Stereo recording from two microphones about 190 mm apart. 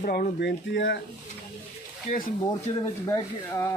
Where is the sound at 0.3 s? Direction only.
70° left (ahead or behind).